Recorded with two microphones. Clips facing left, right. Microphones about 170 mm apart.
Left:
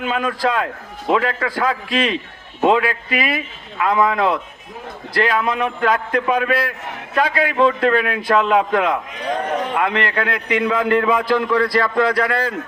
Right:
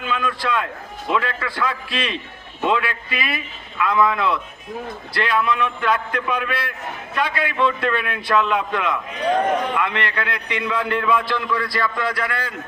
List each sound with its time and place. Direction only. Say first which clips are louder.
0.0 s a man's voice: left 4 dB; 40° left (ahead or behind)